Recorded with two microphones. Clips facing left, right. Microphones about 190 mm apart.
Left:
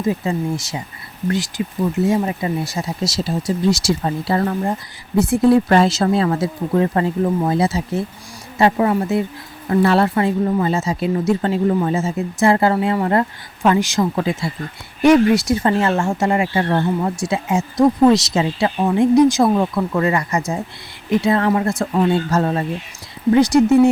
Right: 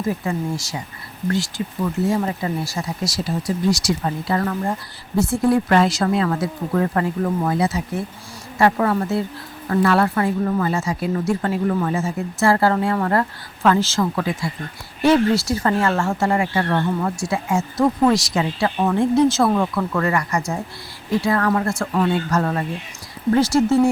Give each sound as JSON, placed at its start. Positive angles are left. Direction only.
{"t": 0.0, "sound": "speech", "side_deg": 20}
{"t": 4.6, "sound": "speech", "side_deg": 15}